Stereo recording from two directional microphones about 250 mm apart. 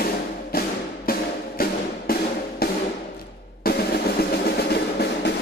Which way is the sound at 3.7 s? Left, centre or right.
Left.